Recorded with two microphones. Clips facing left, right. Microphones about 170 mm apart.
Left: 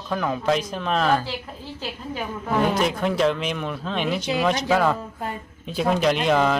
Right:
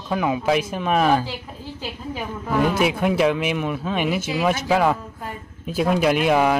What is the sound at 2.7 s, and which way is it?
A man's voice, 10° right (ahead or behind).